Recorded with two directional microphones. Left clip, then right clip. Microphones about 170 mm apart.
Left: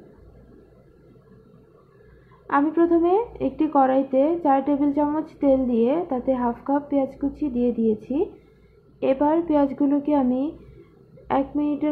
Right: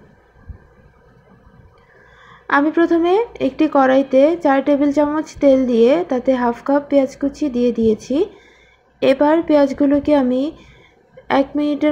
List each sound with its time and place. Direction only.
2.4 s speech: 30° right (ahead or behind)